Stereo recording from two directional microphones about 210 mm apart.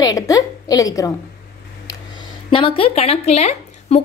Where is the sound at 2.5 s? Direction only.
25° left (ahead or behind).